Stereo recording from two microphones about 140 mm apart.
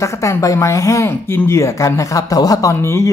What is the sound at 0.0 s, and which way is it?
Speech, 20° left (ahead or behind).